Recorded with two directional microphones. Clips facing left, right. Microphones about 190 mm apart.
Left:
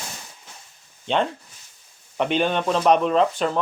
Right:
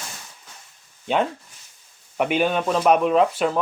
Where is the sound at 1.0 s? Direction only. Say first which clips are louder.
Right 1 dB; 5° right (ahead or behind).